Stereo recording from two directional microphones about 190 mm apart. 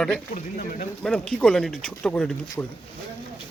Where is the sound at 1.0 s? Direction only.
5° left (ahead or behind).